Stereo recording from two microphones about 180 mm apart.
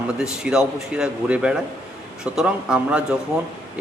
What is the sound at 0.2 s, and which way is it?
Speech, 5° right (ahead or behind).